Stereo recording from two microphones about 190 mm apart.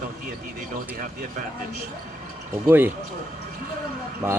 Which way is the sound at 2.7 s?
10° right (ahead or behind).